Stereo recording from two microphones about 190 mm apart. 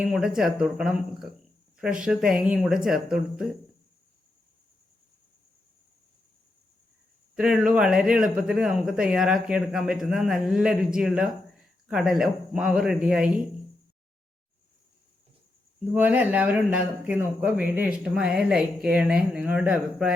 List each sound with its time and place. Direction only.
0.0 s speech: centre (ahead or behind)
7.3 s speech: 5° right (ahead or behind)
16.0 s speech: 10° right (ahead or behind)